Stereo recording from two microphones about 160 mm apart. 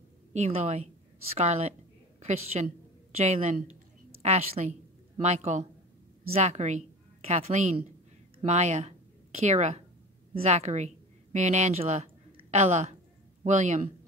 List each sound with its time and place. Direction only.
0.3 s a woman's voice: 40° right (ahead or behind)